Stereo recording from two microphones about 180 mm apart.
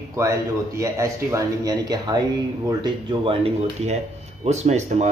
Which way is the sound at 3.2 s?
30° right (ahead or behind).